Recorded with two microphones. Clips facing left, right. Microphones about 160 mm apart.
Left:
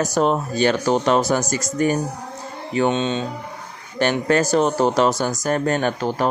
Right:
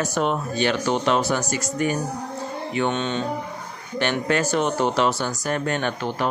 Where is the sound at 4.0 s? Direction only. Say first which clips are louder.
Left 4 dB; 40° left (ahead or behind).